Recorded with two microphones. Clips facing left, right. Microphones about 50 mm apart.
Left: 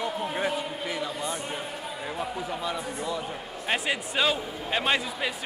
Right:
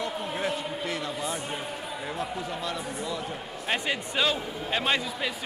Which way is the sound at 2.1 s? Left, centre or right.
Centre.